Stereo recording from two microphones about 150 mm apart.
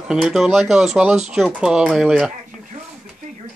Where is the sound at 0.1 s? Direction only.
Centre (ahead or behind).